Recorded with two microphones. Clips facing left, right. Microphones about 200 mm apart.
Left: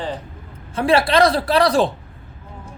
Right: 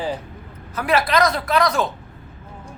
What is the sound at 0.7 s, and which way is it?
Speech, 30° left (ahead or behind).